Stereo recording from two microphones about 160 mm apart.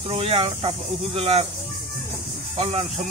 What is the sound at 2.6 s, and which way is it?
Speech, 40° right (ahead or behind).